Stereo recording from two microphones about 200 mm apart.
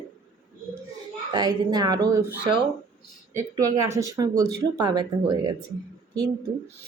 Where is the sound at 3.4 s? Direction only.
15° right (ahead or behind).